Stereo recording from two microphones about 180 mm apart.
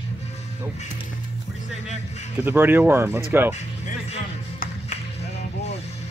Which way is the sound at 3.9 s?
40° left (ahead or behind).